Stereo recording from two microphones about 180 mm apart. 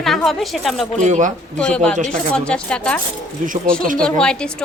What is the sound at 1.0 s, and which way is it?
Speech, 45° right (ahead or behind).